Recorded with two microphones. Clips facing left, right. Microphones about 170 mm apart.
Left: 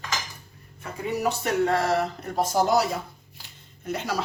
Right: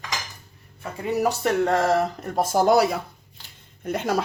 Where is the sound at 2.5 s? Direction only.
60° right (ahead or behind).